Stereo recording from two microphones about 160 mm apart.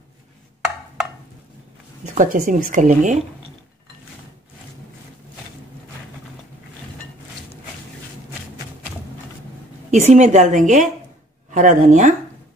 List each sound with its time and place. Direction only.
2.0 s speech: 55° right (ahead or behind)
9.8 s speech: 45° right (ahead or behind)